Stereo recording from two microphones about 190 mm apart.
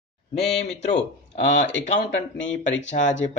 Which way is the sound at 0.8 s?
40° left (ahead or behind).